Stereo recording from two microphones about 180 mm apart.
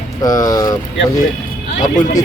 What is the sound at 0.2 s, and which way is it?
Speech, 20° left (ahead or behind).